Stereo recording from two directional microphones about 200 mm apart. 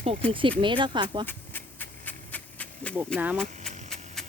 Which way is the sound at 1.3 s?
10° left (ahead or behind).